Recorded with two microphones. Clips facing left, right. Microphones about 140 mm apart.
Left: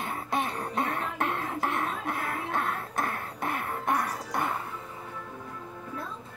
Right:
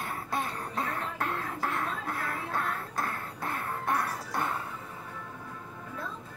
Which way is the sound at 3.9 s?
15° left (ahead or behind).